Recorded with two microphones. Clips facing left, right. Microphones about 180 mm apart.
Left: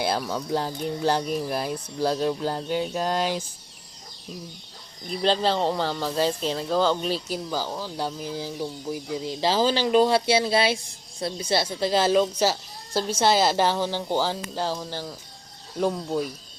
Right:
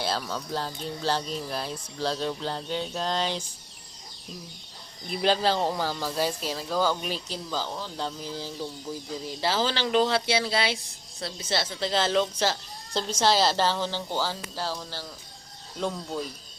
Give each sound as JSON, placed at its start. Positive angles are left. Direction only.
{"t": 0.0, "sound": "speech", "side_deg": 10}
{"t": 5.1, "sound": "speech", "side_deg": -5}
{"t": 6.7, "sound": "speech", "side_deg": 20}